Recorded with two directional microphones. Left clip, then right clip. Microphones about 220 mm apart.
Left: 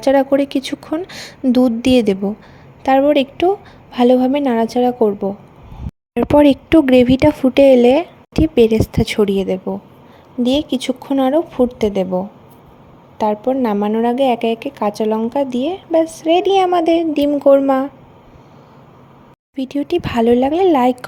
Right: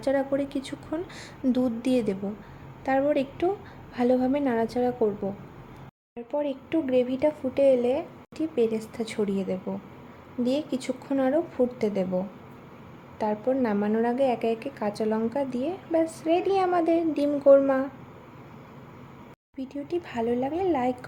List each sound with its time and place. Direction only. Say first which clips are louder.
0.0 s speech: left 12 dB; 35° left (ahead or behind)
6.2 s speech: left 18 dB; 50° left (ahead or behind); by 17.8 s 30° left (ahead or behind)
19.5 s speech: left 13 dB; 40° left (ahead or behind)